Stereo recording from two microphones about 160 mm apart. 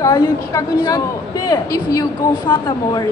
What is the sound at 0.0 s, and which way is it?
A woman's voice, 20° left (ahead or behind).